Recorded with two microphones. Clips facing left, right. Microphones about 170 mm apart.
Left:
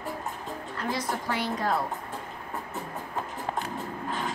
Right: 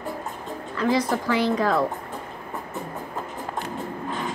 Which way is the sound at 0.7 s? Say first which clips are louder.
Right 9 dB; 90° right.